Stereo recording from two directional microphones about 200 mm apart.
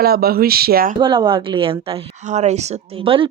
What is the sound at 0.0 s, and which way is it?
Speech, 50° right (ahead or behind).